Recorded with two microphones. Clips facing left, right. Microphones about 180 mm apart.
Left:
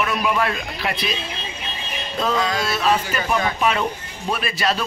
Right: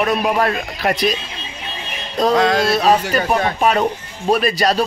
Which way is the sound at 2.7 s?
35° right (ahead or behind).